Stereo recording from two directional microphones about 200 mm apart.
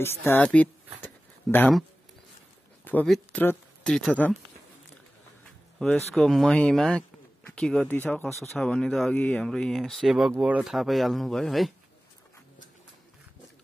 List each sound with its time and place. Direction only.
0.3 s speech: 5° left (ahead or behind)
1.0 s a sound: 10° left (ahead or behind)
2.8 s speech: 10° left (ahead or behind)
6.1 s speech: centre (ahead or behind)